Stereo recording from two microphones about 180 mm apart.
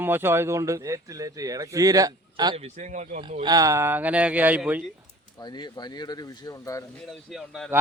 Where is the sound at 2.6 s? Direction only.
40° right (ahead or behind).